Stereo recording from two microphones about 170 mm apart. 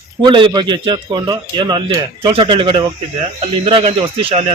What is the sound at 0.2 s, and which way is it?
A man's voice, 25° right (ahead or behind).